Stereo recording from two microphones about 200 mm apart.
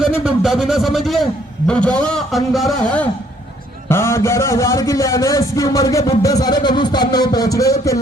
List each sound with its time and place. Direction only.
0.0 s a man's voice: centre (ahead or behind); by 7.9 s 15° left (ahead or behind)